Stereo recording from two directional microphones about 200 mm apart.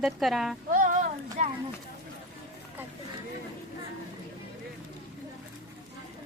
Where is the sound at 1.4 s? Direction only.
35° right (ahead or behind).